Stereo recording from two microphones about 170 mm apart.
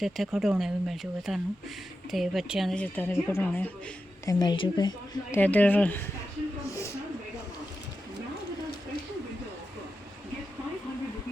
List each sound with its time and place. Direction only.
0.0 s speech: centre (ahead or behind)
4.3 s speech: 25° left (ahead or behind)
5.3 s speech: 10° left (ahead or behind)